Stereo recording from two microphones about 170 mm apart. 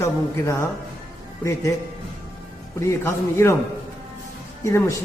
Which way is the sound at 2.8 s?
15° left (ahead or behind).